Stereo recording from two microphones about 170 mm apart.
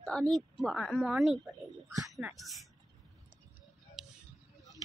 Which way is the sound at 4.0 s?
5° right (ahead or behind).